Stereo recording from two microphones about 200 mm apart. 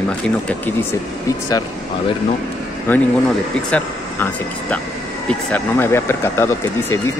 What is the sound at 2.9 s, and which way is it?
Speech, 10° left (ahead or behind).